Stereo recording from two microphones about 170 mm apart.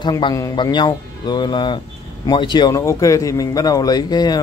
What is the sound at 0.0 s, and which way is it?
Speech, 25° left (ahead or behind).